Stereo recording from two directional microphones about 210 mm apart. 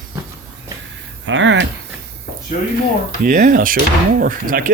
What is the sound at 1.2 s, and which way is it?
Speech, 60° right (ahead or behind).